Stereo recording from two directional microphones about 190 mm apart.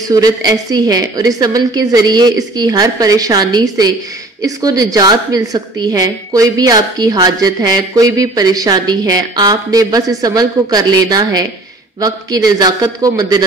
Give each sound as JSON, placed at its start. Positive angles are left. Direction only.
{"t": 0.1, "sound": "a woman's voice", "side_deg": -20}